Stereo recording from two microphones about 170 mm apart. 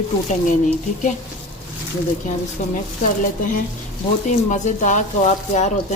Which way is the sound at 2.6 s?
50° left (ahead or behind).